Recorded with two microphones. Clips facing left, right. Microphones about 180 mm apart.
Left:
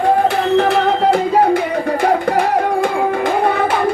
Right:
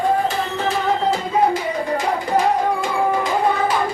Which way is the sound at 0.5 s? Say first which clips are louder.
Left 7 dB; 65° left (ahead or behind).